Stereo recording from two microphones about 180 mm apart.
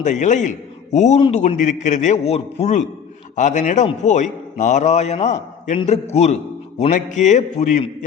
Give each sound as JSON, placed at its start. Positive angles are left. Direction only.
{"t": 0.0, "sound": "a man's voice", "side_deg": 40}